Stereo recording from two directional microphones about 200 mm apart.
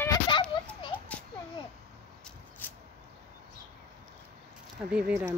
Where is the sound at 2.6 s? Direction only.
10° left (ahead or behind).